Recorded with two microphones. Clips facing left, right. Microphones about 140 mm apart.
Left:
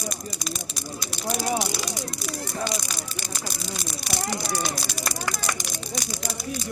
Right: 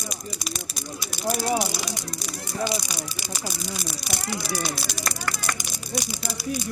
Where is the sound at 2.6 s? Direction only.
5° right (ahead or behind).